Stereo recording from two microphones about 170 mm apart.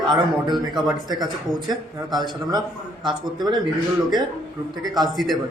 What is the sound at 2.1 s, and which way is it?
Speech, 25° right (ahead or behind).